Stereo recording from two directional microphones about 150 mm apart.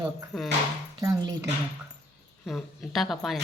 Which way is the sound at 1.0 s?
25° right (ahead or behind).